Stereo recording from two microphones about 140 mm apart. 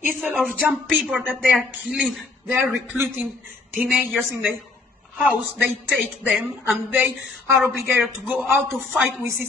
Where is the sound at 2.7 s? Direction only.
15° right (ahead or behind).